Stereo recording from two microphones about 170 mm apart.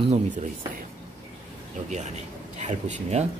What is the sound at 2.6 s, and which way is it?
Speech, 40° right (ahead or behind).